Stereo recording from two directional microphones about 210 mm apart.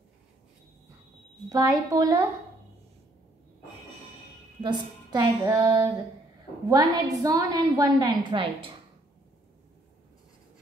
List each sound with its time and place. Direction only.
1.5 s a woman's voice: 15° right (ahead or behind)
4.6 s a woman's voice: 20° right (ahead or behind)